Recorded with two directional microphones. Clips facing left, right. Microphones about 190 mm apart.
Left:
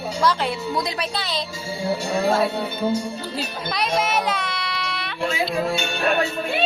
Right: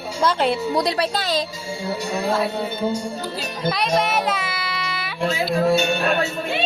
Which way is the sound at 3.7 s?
Centre (ahead or behind).